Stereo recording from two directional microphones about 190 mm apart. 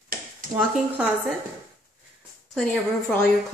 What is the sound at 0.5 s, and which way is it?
Speech, 5° right (ahead or behind).